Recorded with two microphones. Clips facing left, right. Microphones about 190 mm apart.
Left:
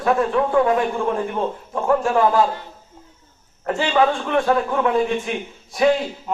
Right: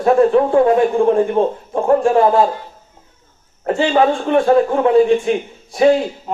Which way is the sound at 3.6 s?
35° right (ahead or behind).